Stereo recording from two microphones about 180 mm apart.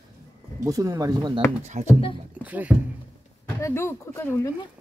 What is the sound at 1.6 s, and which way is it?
Speech, 40° right (ahead or behind).